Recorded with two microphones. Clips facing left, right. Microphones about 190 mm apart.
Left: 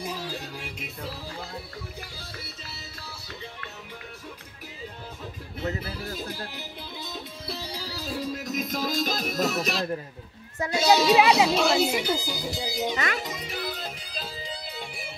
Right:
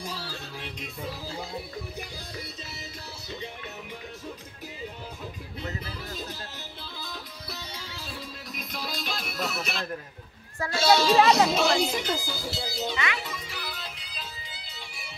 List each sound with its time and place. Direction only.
0.0 s music: 15° left (ahead or behind)
7.0 s music: 25° left (ahead or behind)
10.6 s speech: 15° left (ahead or behind)
12.9 s speech: 40° left (ahead or behind)
13.2 s music: 20° left (ahead or behind)
13.7 s music: 40° left (ahead or behind)
14.7 s music: 55° left (ahead or behind)